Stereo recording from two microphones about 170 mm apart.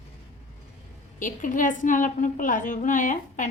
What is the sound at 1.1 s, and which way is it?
A woman's voice, 50° left (ahead or behind).